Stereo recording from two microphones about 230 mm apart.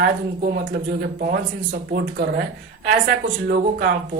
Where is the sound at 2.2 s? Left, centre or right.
Right.